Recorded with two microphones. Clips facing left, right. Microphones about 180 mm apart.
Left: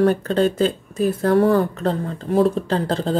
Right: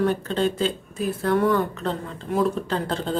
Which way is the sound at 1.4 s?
30° left (ahead or behind).